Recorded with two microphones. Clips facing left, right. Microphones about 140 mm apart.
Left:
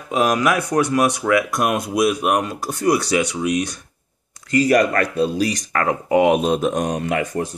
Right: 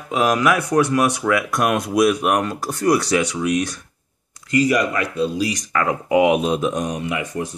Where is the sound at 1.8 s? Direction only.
30° left (ahead or behind).